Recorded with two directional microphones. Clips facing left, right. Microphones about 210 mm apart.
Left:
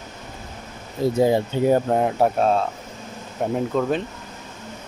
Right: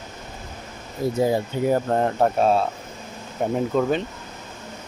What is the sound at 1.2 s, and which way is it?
Speech, 25° left (ahead or behind).